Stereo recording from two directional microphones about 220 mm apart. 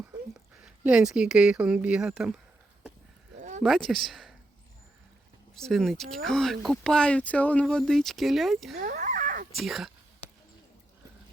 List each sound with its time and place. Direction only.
0.6 s speech: 5° right (ahead or behind)
3.6 s speech: centre (ahead or behind)
5.5 s speech: centre (ahead or behind)
8.8 s a sound: 35° right (ahead or behind)
9.5 s speech: centre (ahead or behind)